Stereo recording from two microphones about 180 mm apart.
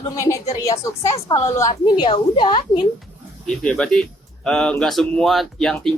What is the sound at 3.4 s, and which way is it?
Speech, 5° left (ahead or behind).